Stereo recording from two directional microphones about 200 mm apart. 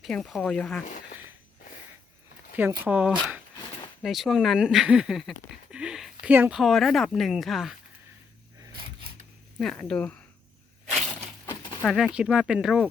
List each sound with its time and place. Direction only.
0.0 s speech: centre (ahead or behind)
2.6 s speech: 10° right (ahead or behind)
8.6 s a sound: 25° right (ahead or behind)
9.6 s speech: 5° left (ahead or behind)
11.8 s speech: 5° left (ahead or behind)